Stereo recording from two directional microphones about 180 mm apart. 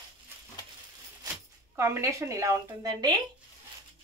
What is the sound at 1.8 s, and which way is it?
A woman's voice, 15° right (ahead or behind).